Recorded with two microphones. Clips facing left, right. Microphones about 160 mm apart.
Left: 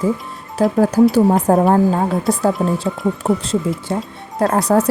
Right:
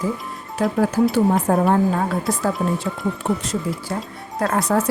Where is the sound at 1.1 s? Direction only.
40° left (ahead or behind).